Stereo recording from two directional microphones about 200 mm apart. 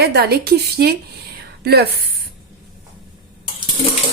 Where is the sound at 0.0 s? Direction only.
55° right (ahead or behind).